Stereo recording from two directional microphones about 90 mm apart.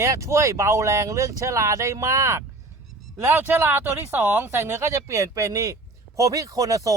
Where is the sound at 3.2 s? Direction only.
25° right (ahead or behind).